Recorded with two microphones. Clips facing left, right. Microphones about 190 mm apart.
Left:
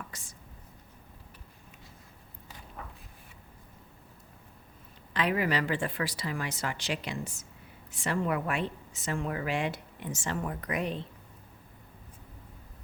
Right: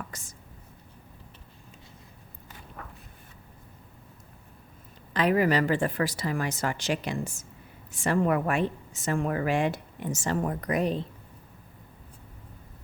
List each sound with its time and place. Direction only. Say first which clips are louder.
0.1 s speech: right 4 dB; 45° right (ahead or behind)
5.1 s a woman's voice: right 5 dB; 40° right (ahead or behind)